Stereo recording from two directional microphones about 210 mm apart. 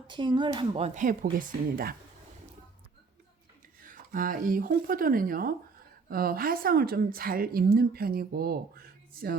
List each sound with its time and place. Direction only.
0.1 s speech: 20° right (ahead or behind); by 2.0 s 45° right (ahead or behind)
3.8 s a woman's voice: 40° right (ahead or behind)